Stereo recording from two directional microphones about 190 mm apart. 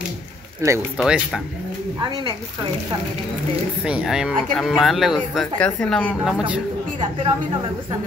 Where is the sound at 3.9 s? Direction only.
5° right (ahead or behind).